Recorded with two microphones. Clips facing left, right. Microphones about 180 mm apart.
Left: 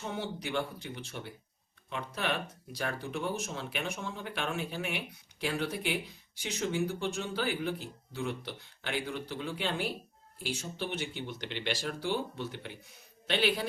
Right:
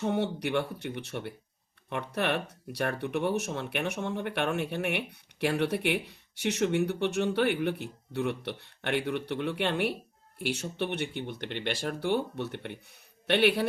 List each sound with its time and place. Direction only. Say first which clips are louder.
0.0 s speech: right 8 dB; 65° right (ahead or behind)